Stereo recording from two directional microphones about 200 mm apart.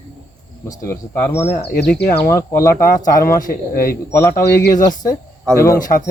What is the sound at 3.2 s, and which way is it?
Speech, 45° left (ahead or behind).